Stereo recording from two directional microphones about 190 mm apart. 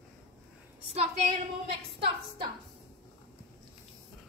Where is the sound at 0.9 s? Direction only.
35° right (ahead or behind).